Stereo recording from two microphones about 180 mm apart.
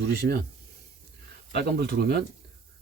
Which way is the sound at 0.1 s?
60° right (ahead or behind).